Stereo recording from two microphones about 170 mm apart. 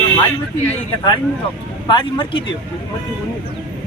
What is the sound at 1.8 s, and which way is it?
Speech, 30° left (ahead or behind).